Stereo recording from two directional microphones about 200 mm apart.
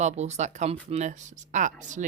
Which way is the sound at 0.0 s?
35° right (ahead or behind).